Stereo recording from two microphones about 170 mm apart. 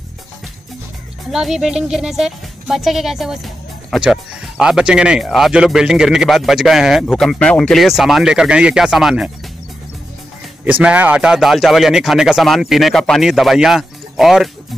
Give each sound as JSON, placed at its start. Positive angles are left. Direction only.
{"t": 1.3, "sound": "speech", "side_deg": -5}
{"t": 10.6, "sound": "speech", "side_deg": -10}